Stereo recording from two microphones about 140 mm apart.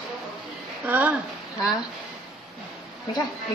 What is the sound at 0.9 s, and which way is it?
Speech, 10° right (ahead or behind).